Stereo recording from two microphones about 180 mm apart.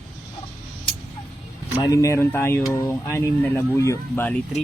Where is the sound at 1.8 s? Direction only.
20° left (ahead or behind).